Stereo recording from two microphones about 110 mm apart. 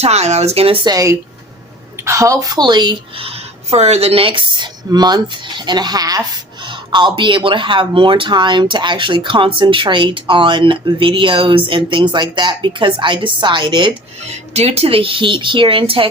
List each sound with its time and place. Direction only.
0.0 s speech: 80° right; by 0.8 s 65° right (ahead or behind)
0.9 s speech: 30° right (ahead or behind)
3.2 s speech: 65° right (ahead or behind); by 13.9 s 45° right (ahead or behind)
14.3 s speech: 75° right (ahead or behind); by 16.0 s 55° right (ahead or behind)